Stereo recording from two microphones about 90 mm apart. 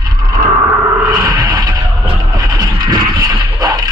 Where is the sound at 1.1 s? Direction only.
45° right (ahead or behind).